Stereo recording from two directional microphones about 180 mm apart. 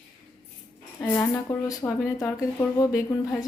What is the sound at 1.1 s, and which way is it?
A woman's voice, 15° left (ahead or behind).